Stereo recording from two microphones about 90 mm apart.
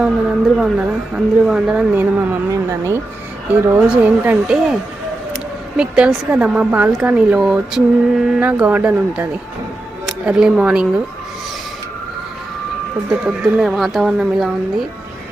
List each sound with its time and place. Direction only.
0.4 s a woman's voice: centre (ahead or behind); by 3.0 s 30° right (ahead or behind)
3.5 s a woman's voice: 20° right (ahead or behind)
8.4 s a woman's voice: 20° right (ahead or behind)
13.1 s a woman's voice: 10° right (ahead or behind)